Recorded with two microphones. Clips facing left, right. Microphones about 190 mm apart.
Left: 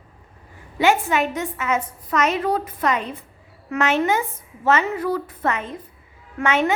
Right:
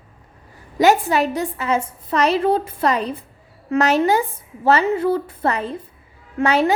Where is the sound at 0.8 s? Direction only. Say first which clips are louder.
Right 3 dB; 35° right (ahead or behind).